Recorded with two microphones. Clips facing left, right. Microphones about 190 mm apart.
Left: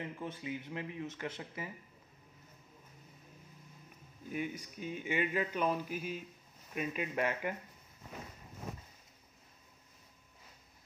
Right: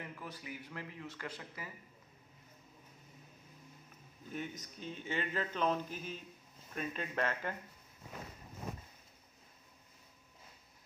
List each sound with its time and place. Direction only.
0.0 s speech: 25° left (ahead or behind)
4.3 s speech: 10° left (ahead or behind)